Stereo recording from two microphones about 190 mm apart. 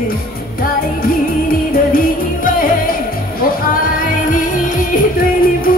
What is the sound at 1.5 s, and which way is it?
Music, 45° left (ahead or behind).